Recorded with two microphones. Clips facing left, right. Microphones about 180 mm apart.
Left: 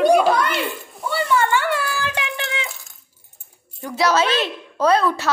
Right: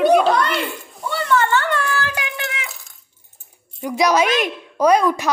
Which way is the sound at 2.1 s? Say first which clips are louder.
Left 1 dB; 30° left (ahead or behind).